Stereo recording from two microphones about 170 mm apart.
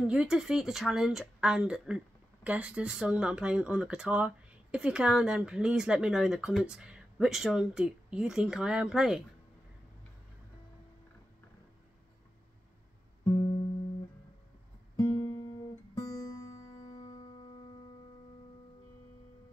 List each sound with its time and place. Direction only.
0.0 s speech: 5° right (ahead or behind)
13.2 s music: 20° left (ahead or behind)
15.0 s music: 25° left (ahead or behind)